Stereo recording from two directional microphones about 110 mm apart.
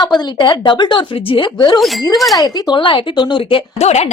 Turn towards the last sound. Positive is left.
turn(degrees=80)